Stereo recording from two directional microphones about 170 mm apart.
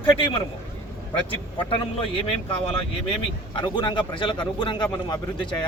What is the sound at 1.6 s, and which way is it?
Speech, 30° left (ahead or behind).